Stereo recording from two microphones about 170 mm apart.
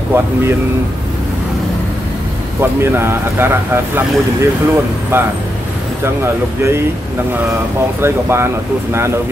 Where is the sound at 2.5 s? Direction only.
15° right (ahead or behind).